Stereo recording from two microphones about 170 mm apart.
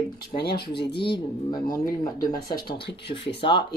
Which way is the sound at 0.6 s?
75° left (ahead or behind).